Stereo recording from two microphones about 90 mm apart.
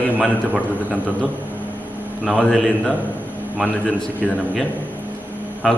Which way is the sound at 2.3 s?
Centre (ahead or behind).